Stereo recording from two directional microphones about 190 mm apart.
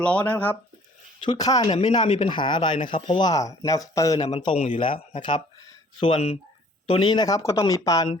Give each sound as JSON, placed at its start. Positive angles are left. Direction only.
{"t": 0.0, "sound": "speech", "side_deg": 5}
{"t": 1.2, "sound": "speech", "side_deg": 20}
{"t": 2.0, "sound": "speech", "side_deg": 35}
{"t": 2.3, "sound": "speech", "side_deg": 25}
{"t": 4.3, "sound": "speech", "side_deg": 35}